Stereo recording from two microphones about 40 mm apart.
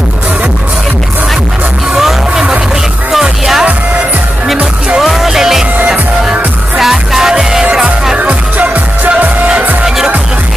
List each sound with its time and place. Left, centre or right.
2.0 s music: centre
5.0 s music: centre
6.8 s music: centre
8.2 s music: right
9.8 s music: centre